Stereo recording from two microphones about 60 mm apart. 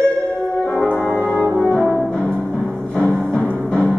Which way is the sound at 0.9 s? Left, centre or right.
Centre.